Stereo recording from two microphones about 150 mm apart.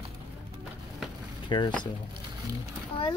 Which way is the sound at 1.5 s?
30° left (ahead or behind).